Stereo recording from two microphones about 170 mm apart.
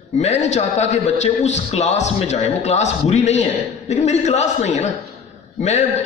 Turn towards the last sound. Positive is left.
turn(degrees=40)  # may be behind; listen again after turning